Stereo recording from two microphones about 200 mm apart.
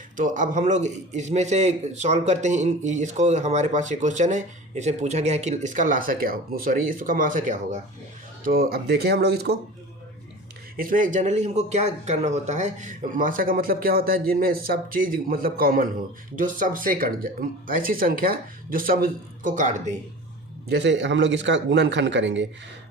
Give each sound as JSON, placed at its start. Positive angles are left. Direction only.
{"t": 0.2, "sound": "a man's voice", "side_deg": -40}
{"t": 8.5, "sound": "speech", "side_deg": -50}
{"t": 10.8, "sound": "speech", "side_deg": -45}
{"t": 20.7, "sound": "speech", "side_deg": -60}